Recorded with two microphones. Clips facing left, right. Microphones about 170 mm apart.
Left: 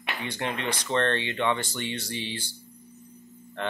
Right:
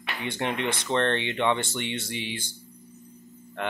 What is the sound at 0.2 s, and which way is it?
Speech, 20° right (ahead or behind).